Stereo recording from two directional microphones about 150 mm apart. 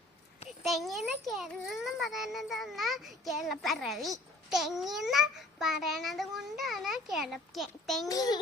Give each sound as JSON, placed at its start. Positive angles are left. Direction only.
{"t": 0.6, "sound": "a child's voice", "side_deg": 0}
{"t": 8.0, "sound": "a child's voice", "side_deg": 25}